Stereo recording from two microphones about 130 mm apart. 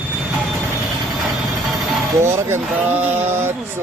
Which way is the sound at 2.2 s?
20° right (ahead or behind).